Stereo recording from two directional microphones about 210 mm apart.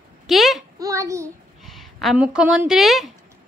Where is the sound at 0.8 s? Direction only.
15° right (ahead or behind).